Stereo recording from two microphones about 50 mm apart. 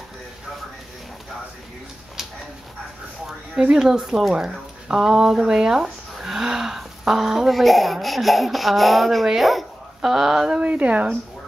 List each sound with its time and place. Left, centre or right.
3.7 s speech: centre
10.6 s speech: right